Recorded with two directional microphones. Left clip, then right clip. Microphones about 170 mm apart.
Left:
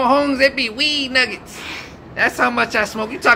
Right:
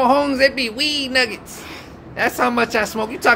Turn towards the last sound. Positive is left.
turn(degrees=-40)  # may be behind; listen again after turning